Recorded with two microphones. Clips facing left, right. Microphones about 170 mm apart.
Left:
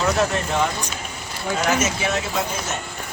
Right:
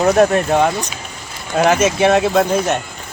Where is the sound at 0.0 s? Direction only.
60° right (ahead or behind).